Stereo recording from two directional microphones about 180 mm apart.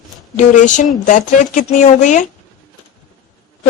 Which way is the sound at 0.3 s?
45° left (ahead or behind).